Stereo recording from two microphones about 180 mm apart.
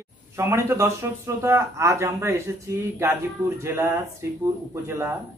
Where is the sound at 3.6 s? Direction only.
15° right (ahead or behind).